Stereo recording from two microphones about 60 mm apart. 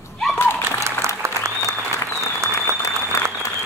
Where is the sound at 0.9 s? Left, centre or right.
Right.